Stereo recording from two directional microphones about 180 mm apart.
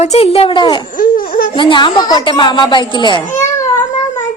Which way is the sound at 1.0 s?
50° left (ahead or behind).